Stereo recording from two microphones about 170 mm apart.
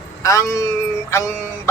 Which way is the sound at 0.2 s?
20° left (ahead or behind).